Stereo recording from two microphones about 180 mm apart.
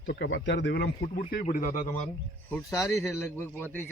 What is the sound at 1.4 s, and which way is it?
Speech, 45° left (ahead or behind).